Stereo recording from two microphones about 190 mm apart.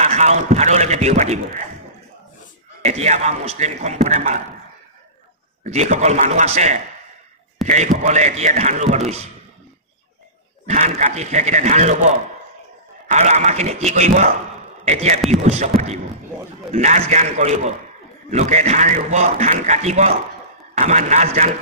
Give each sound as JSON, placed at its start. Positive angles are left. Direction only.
{"t": 0.0, "sound": "a man's voice", "side_deg": -35}
{"t": 2.8, "sound": "a man's voice", "side_deg": -35}
{"t": 5.6, "sound": "a man's voice", "side_deg": -40}
{"t": 10.7, "sound": "a man's voice", "side_deg": -35}
{"t": 13.1, "sound": "a man's voice", "side_deg": -40}